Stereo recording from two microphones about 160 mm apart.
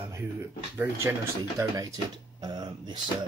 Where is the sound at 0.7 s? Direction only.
15° right (ahead or behind).